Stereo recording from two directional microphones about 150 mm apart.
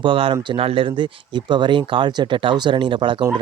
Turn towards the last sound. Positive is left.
turn(degrees=-35)  # may be behind; listen again after turning